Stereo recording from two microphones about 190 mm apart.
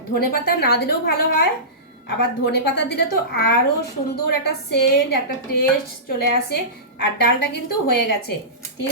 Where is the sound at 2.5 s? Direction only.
60° left (ahead or behind).